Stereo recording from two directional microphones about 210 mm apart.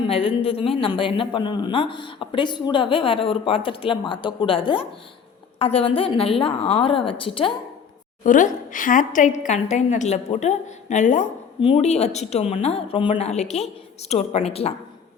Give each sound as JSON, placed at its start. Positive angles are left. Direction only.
{"t": 0.1, "sound": "speech", "side_deg": 25}
{"t": 8.2, "sound": "a woman's voice", "side_deg": 40}